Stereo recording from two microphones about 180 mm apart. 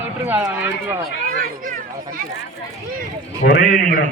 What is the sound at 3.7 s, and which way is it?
Speech, 50° left (ahead or behind).